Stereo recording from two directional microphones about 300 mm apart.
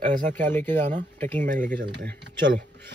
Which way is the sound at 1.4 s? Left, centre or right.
Right.